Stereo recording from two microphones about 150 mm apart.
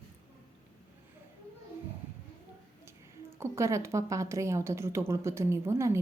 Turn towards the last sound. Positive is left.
turn(degrees=-20)  # may be behind; listen again after turning